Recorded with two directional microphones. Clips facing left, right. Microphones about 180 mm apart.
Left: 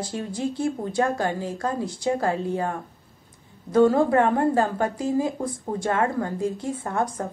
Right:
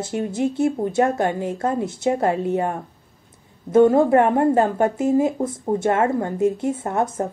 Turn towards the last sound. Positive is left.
turn(degrees=-25)  # may be behind; listen again after turning